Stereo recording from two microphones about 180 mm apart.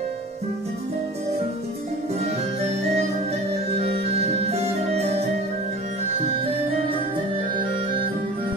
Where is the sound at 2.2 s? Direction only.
35° right (ahead or behind).